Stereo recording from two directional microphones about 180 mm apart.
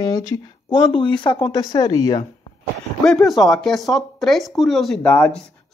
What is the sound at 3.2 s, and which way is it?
Speech, centre (ahead or behind).